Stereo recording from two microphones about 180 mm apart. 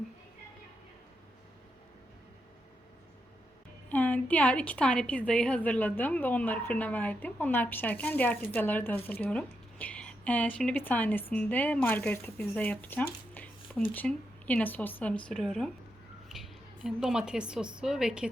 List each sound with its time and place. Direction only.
3.8 s a woman's voice: 10° left (ahead or behind)